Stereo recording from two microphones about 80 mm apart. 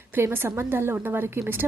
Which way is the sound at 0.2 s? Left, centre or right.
Right.